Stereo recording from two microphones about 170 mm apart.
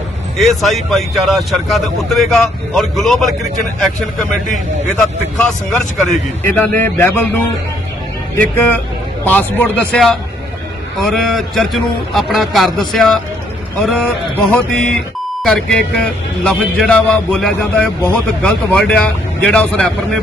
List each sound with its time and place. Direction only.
0.6 s a man's voice: centre (ahead or behind)
8.5 s a man's voice: 10° left (ahead or behind)